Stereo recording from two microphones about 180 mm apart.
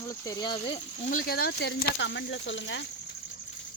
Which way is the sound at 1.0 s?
50° left (ahead or behind).